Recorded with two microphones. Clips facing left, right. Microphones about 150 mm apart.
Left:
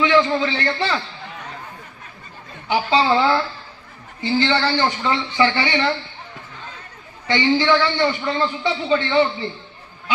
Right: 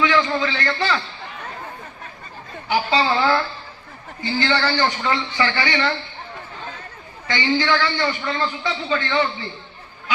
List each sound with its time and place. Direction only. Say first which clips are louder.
0.0 s a man's voice: left 3 dB; 25° left (ahead or behind)
2.6 s a man's voice: left 2 dB; 25° left (ahead or behind)
7.3 s a man's voice: left 3 dB; 25° left (ahead or behind)